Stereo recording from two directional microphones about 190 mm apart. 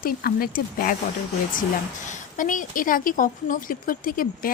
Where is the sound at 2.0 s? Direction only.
45° left (ahead or behind).